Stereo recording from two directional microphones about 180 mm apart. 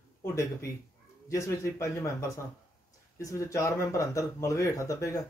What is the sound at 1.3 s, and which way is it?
Speech, 15° left (ahead or behind).